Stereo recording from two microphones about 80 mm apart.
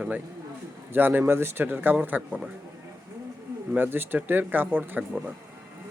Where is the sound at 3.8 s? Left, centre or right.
Right.